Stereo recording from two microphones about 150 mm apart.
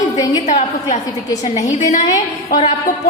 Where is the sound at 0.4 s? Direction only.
55° left (ahead or behind).